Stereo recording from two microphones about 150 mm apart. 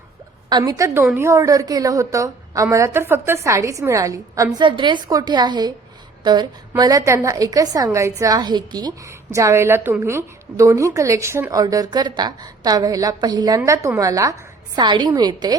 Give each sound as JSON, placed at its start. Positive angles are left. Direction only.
{"t": 0.5, "sound": "a woman's voice", "side_deg": -20}